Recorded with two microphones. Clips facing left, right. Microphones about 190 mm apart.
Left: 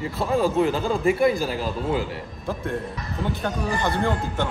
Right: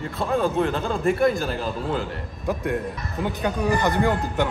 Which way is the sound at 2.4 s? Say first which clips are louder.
Right 3 dB; 15° right (ahead or behind).